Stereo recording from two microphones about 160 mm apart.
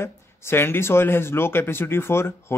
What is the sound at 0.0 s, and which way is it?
Speech, 15° left (ahead or behind).